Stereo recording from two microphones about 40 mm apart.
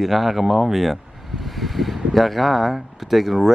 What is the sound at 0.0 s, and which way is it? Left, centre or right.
Speech, centre.